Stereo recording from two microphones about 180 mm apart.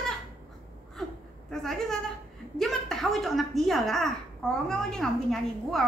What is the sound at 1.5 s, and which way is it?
A woman's voice, centre (ahead or behind).